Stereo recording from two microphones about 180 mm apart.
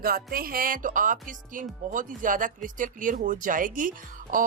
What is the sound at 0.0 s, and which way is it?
Speech, 55° right (ahead or behind).